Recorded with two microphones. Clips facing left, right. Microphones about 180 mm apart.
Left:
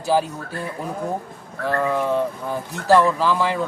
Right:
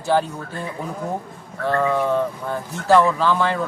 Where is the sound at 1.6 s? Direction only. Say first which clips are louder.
Right 1 dB; 5° left (ahead or behind).